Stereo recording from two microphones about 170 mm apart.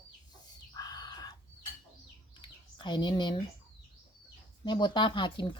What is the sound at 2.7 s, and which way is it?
Speech, 25° left (ahead or behind).